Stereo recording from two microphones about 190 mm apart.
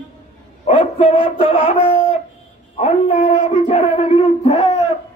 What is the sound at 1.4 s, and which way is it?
Music, 35° left (ahead or behind).